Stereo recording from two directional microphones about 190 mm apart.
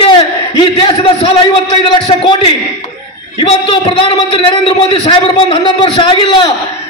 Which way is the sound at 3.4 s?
25° left (ahead or behind).